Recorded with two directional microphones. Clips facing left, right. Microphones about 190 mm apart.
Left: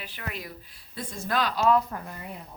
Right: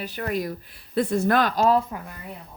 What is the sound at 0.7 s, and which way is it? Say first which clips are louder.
Speech: right 17 dB; 65° right (ahead or behind).